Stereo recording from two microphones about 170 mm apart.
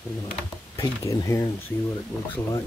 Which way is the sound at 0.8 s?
20° left (ahead or behind).